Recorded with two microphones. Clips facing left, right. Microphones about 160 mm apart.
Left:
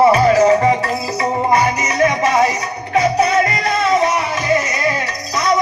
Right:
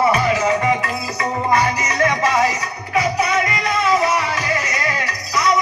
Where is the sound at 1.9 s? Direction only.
20° left (ahead or behind).